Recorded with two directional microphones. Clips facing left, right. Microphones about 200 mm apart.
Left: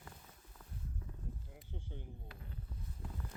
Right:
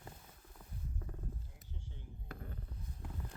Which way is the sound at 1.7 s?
55° left (ahead or behind).